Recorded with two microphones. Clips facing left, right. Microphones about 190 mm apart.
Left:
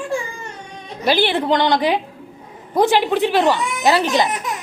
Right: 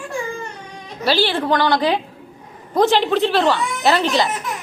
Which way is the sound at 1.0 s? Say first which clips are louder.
Left 1 dB; 20° left (ahead or behind).